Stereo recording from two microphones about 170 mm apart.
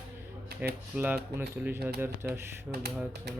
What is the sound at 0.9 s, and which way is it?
Speech, 10° right (ahead or behind).